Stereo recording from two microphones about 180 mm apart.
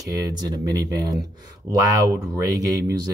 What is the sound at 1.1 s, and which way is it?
Speech, 20° right (ahead or behind).